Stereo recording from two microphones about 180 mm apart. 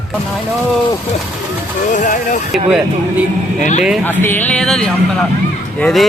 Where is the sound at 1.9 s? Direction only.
45° left (ahead or behind).